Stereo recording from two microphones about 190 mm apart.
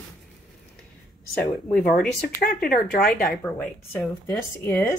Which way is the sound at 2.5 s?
50° left (ahead or behind).